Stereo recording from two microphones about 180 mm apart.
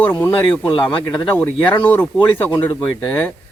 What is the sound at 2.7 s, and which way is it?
Speech, 25° left (ahead or behind).